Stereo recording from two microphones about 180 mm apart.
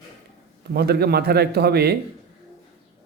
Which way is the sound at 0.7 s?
60° right (ahead or behind).